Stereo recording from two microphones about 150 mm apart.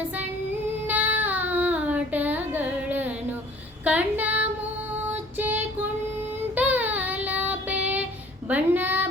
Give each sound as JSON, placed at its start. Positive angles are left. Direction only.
{"t": 0.9, "sound": "child singing", "side_deg": -10}
{"t": 3.8, "sound": "female singing", "side_deg": -10}
{"t": 5.1, "sound": "music", "side_deg": -10}
{"t": 6.6, "sound": "child singing", "side_deg": -10}
{"t": 8.4, "sound": "a sound", "side_deg": -10}